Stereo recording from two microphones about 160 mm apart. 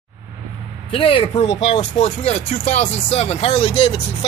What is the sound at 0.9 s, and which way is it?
Speech, 35° left (ahead or behind).